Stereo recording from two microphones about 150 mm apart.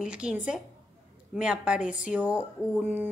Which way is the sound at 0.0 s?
5° right (ahead or behind).